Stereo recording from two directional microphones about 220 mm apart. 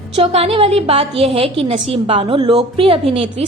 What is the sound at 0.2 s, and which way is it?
A woman's voice, 25° right (ahead or behind).